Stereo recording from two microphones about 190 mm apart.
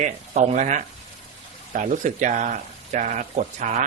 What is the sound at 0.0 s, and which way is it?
Speech, 40° right (ahead or behind).